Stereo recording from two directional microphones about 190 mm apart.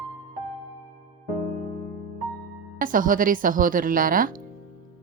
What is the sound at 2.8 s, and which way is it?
A woman's voice, 45° right (ahead or behind).